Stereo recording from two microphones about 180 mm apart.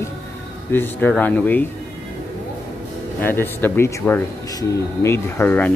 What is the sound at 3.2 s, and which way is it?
Speech, 10° left (ahead or behind).